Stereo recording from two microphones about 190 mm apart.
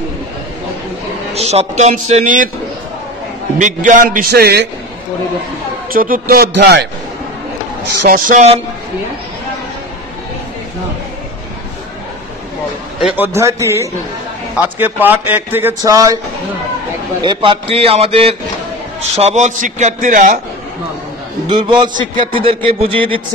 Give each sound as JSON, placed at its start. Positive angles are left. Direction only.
{"t": 1.3, "sound": "a man's voice", "side_deg": -35}
{"t": 3.5, "sound": "a man's voice", "side_deg": -40}
{"t": 5.9, "sound": "a man's voice", "side_deg": -45}
{"t": 8.1, "sound": "a man's voice", "side_deg": -45}
{"t": 13.0, "sound": "a man's voice", "side_deg": -10}
{"t": 17.2, "sound": "a man's voice", "side_deg": -25}
{"t": 21.5, "sound": "speech", "side_deg": -25}